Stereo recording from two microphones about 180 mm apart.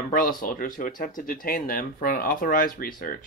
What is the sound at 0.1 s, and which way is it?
Speech, 50° left (ahead or behind).